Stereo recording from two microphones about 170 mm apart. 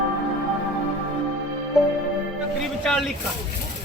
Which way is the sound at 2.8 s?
5° left (ahead or behind).